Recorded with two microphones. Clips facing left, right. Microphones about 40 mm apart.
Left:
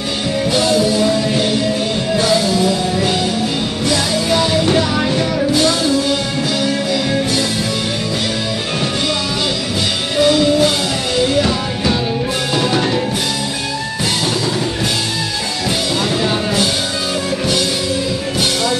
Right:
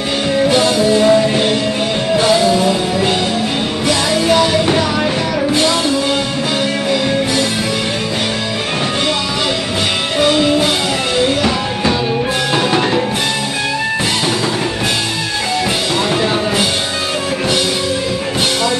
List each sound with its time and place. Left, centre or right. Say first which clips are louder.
0.5 s music: even; right
2.1 s music: right 3 dB; right
10.1 s music: left 1 dB; right